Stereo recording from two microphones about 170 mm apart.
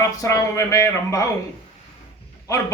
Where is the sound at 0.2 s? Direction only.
20° left (ahead or behind).